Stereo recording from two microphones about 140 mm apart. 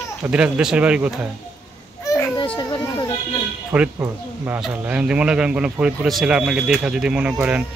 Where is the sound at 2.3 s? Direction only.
35° left (ahead or behind).